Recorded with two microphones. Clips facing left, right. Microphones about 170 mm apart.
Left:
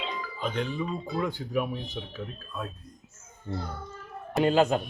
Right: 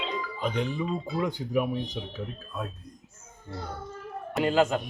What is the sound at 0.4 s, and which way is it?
Speech, 10° right (ahead or behind).